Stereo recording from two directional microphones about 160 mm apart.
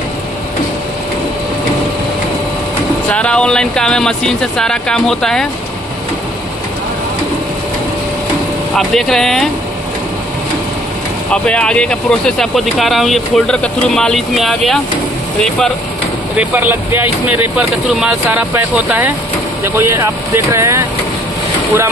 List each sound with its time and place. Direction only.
3.1 s speech: 5° left (ahead or behind)
8.7 s speech: centre (ahead or behind)
11.4 s speech: 5° left (ahead or behind)
16.3 s speech: 10° right (ahead or behind)